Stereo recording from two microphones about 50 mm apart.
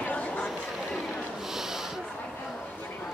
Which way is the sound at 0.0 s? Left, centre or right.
Left.